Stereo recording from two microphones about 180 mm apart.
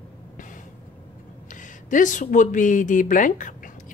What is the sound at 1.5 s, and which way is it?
Speech, 45° left (ahead or behind).